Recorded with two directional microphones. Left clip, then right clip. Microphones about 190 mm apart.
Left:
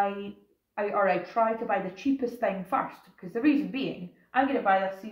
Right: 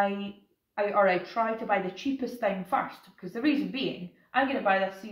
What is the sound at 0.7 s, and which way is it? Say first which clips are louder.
Speech: right 1 dB; 15° left (ahead or behind).